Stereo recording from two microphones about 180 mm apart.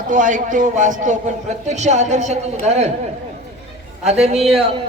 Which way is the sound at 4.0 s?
35° right (ahead or behind).